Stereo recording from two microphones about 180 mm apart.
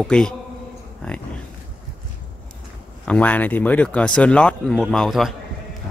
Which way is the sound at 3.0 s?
5° left (ahead or behind).